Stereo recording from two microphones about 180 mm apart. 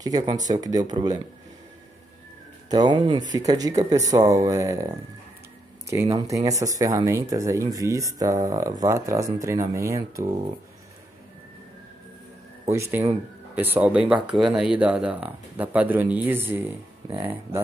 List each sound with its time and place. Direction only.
0.0 s speech: 20° right (ahead or behind)
2.7 s speech: 25° right (ahead or behind)
12.7 s speech: 15° right (ahead or behind)